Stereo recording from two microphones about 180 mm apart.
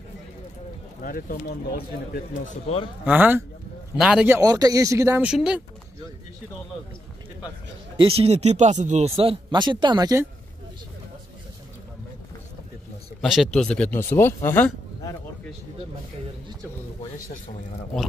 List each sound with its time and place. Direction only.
1.0 s speech: 50° left (ahead or behind)
3.1 s speech: 10° right (ahead or behind)
4.4 s speech: 20° right (ahead or behind)
5.2 s speech: 5° right (ahead or behind)
8.0 s speech: 35° right (ahead or behind)
13.2 s speech: centre (ahead or behind)